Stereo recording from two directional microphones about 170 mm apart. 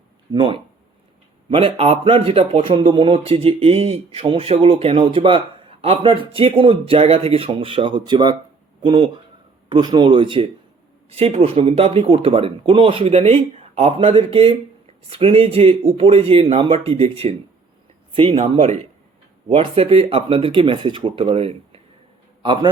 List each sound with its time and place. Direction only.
0.3 s speech: 30° right (ahead or behind)